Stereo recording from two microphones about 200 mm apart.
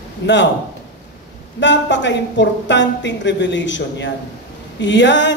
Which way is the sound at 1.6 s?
60° left (ahead or behind).